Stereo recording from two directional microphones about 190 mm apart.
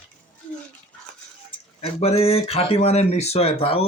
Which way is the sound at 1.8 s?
30° left (ahead or behind).